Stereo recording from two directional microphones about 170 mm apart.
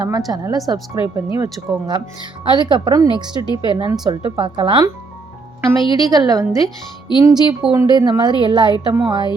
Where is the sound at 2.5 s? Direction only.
25° right (ahead or behind).